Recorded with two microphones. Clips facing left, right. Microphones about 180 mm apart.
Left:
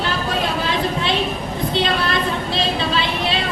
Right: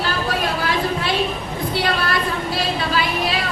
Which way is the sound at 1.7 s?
20° left (ahead or behind).